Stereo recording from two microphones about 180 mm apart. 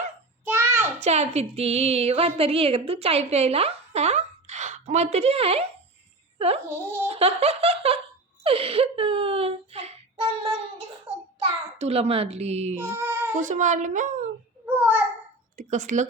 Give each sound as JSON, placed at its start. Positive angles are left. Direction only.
{"t": 0.4, "sound": "child singing", "side_deg": -10}
{"t": 0.9, "sound": "speech", "side_deg": -40}
{"t": 6.7, "sound": "a child's voice", "side_deg": -15}
{"t": 7.1, "sound": "speech", "side_deg": -35}
{"t": 8.4, "sound": "a sound", "side_deg": -30}
{"t": 11.8, "sound": "speech", "side_deg": -35}
{"t": 12.7, "sound": "child singing", "side_deg": -15}
{"t": 13.4, "sound": "a woman's voice", "side_deg": -45}
{"t": 14.7, "sound": "a sound", "side_deg": -10}
{"t": 15.5, "sound": "speech", "side_deg": -45}